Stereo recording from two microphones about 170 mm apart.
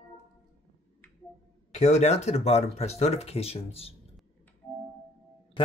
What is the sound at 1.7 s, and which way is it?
Speech, 40° left (ahead or behind).